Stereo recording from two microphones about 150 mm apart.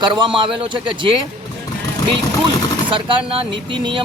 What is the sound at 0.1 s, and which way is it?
Speech, 35° right (ahead or behind).